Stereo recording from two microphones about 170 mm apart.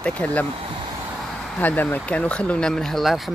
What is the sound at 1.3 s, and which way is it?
Speech, 5° left (ahead or behind).